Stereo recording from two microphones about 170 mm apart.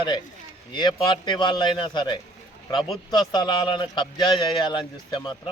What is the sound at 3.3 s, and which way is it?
A man's voice, 25° left (ahead or behind).